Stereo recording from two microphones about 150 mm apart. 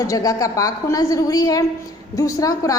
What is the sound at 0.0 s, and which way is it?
A woman's voice, 25° left (ahead or behind).